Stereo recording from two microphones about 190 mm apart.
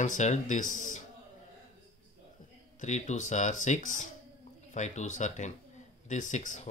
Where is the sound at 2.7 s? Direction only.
40° left (ahead or behind).